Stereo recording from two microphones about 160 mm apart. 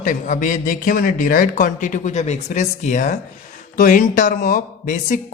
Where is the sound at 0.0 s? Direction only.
55° left (ahead or behind).